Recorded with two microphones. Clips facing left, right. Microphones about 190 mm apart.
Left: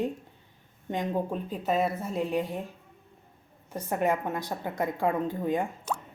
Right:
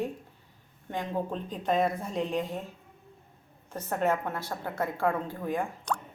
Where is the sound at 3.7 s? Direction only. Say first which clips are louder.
Left 1 dB; 10° left (ahead or behind).